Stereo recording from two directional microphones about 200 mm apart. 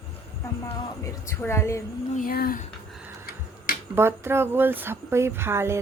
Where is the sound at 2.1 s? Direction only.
45° left (ahead or behind).